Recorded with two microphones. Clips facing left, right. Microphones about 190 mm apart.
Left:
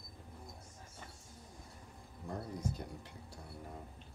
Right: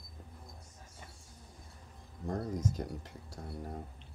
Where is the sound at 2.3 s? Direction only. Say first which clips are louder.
Right 6 dB; 45° right (ahead or behind).